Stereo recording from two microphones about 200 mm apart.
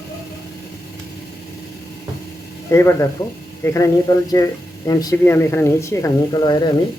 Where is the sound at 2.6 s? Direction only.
15° left (ahead or behind).